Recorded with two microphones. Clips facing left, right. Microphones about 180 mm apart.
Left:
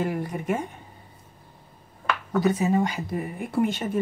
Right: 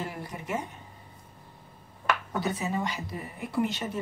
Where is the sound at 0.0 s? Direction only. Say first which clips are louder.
Left 9 dB; 55° left (ahead or behind).